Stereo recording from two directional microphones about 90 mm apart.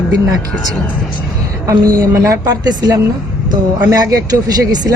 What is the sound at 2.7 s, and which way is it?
Speech, 45° right (ahead or behind).